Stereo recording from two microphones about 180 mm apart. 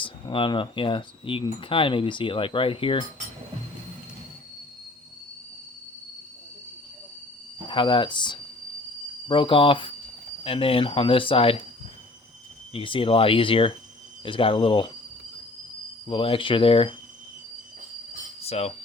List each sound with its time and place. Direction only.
0.0 s speech: 30° left (ahead or behind)
7.7 s speech: 25° left (ahead or behind)
12.7 s speech: 30° left (ahead or behind)
16.0 s speech: 30° left (ahead or behind)
18.4 s a sound: 35° left (ahead or behind)